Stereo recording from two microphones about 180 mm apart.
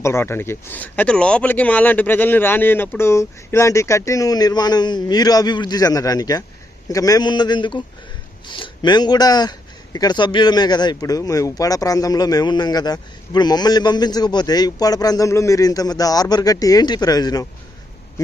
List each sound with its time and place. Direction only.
0.0 s a man's voice: 15° left (ahead or behind)